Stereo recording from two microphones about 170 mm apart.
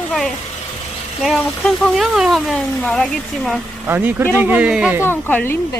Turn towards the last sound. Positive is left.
turn(degrees=10)  # may be behind; listen again after turning